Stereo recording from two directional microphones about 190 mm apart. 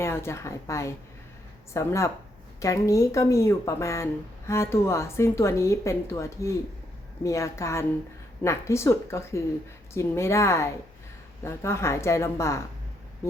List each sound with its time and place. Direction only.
0.0 s speech: 15° left (ahead or behind)